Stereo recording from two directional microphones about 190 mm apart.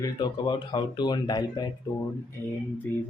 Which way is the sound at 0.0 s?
25° left (ahead or behind).